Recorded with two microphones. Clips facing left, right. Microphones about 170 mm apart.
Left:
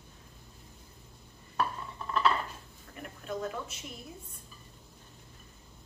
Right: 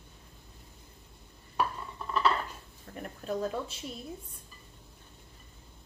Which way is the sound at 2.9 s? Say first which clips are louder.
Right 5 dB; 35° right (ahead or behind).